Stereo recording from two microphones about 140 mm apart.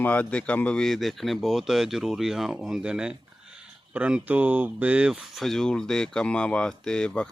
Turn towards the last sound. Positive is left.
turn(degrees=5)  # may be behind; listen again after turning